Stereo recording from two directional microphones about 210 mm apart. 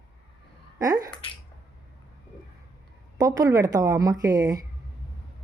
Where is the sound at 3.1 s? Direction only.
15° right (ahead or behind).